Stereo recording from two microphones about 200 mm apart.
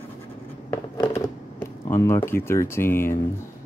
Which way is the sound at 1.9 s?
10° left (ahead or behind).